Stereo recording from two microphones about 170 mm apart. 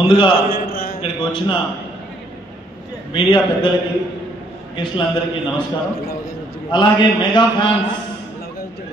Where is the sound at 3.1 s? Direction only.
30° left (ahead or behind).